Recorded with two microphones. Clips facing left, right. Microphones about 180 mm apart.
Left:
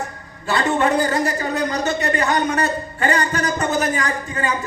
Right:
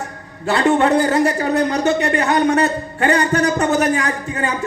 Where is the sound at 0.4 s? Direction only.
65° right (ahead or behind).